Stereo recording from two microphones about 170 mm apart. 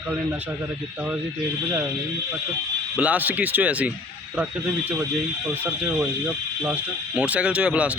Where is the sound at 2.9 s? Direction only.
10° right (ahead or behind).